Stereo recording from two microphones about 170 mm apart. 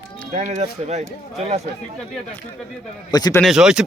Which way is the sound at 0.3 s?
45° right (ahead or behind).